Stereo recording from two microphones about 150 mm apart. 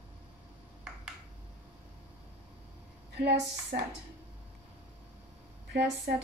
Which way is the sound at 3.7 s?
90° right.